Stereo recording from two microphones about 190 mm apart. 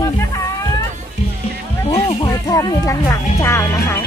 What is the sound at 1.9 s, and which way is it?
Music, 30° left (ahead or behind).